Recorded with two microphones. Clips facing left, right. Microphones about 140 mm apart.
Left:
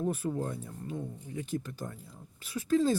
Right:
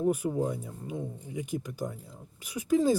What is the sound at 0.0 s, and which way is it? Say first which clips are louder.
Speech: right 4 dB; 10° right (ahead or behind).